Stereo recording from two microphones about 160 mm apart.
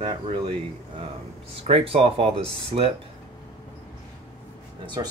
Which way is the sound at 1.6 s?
40° right (ahead or behind).